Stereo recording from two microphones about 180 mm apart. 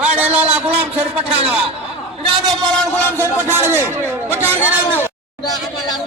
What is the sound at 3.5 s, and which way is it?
Speech, 15° right (ahead or behind).